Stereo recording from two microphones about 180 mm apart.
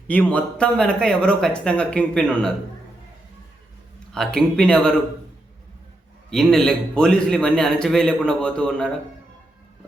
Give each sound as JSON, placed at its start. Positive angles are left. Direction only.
{"t": 0.1, "sound": "speech", "side_deg": 10}
{"t": 4.1, "sound": "speech", "side_deg": 5}
{"t": 6.3, "sound": "speech", "side_deg": 0}